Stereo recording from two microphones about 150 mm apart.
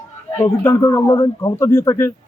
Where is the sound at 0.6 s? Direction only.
20° left (ahead or behind).